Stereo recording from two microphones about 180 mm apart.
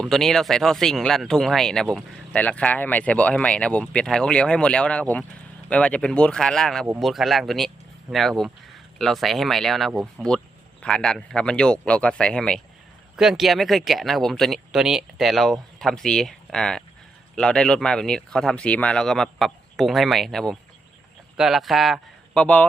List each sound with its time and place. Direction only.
0.0 s a man's voice: centre (ahead or behind)